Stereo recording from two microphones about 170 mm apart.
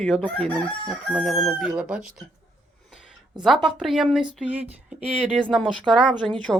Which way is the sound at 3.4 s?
Centre (ahead or behind).